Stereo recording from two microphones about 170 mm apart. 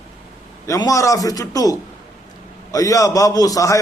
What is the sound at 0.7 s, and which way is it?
A man's voice, 20° left (ahead or behind).